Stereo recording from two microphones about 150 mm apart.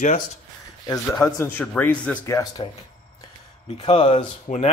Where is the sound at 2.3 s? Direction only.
20° left (ahead or behind).